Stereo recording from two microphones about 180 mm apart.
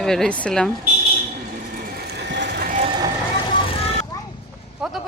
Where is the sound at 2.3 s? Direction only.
70° right (ahead or behind).